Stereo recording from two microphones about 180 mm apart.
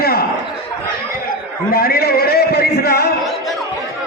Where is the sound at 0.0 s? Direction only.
60° left (ahead or behind).